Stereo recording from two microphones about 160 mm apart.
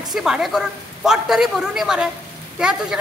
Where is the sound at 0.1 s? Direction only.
Centre (ahead or behind).